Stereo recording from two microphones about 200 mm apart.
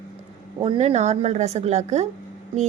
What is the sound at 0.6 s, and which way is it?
A woman's voice, 35° right (ahead or behind).